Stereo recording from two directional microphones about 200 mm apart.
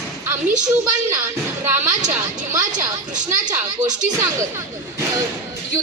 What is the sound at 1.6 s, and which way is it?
Speech, 10° right (ahead or behind).